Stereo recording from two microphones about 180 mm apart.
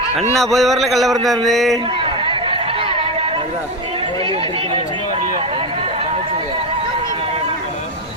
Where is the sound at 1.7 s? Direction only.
30° right (ahead or behind).